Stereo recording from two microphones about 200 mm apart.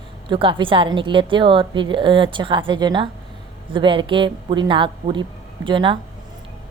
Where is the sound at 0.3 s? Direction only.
25° right (ahead or behind).